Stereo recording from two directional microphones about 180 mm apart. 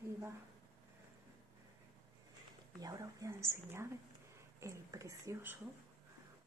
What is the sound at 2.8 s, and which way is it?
Speech, 20° right (ahead or behind).